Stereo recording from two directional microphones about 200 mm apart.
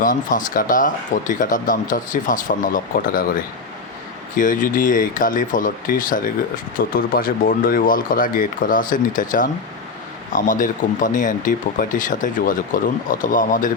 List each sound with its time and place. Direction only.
0.0 s speech: 40° left (ahead or behind)
4.4 s speech: 40° left (ahead or behind)